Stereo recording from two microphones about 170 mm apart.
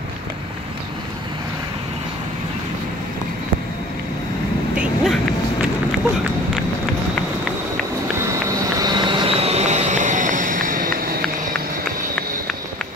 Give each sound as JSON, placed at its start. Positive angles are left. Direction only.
{"t": 4.7, "sound": "vehicle", "side_deg": 0}
{"t": 8.8, "sound": "vehicle", "side_deg": -25}